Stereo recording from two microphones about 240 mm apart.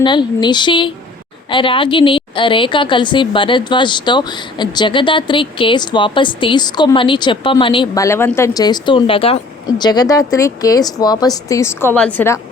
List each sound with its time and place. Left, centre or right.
0.0 s a woman's voice: centre